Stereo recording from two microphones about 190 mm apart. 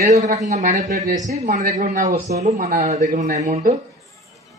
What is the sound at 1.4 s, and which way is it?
Speech, 40° right (ahead or behind).